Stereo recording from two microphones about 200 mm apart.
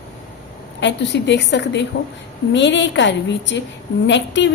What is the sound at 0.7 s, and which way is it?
A woman's voice, 60° left (ahead or behind).